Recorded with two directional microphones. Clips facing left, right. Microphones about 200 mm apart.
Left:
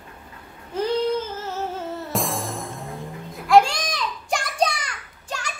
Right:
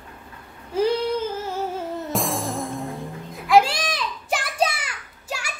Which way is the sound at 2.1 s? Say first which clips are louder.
Right 1 dB; centre (ahead or behind).